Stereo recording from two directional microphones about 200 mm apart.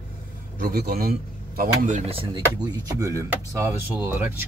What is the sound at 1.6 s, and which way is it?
Speech, 35° right (ahead or behind).